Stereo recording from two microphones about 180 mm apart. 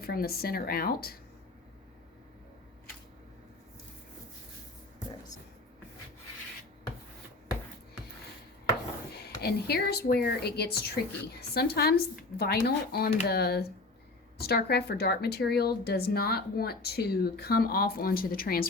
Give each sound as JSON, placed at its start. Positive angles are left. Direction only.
{"t": 0.0, "sound": "speech", "side_deg": 55}
{"t": 9.1, "sound": "speech", "side_deg": 60}